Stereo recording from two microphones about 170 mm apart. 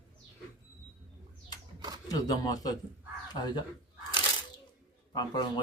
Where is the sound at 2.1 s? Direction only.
20° left (ahead or behind).